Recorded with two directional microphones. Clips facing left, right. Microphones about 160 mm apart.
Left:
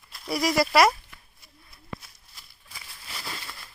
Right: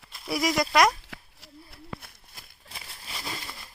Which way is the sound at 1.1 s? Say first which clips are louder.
Right 8 dB; 70° right (ahead or behind).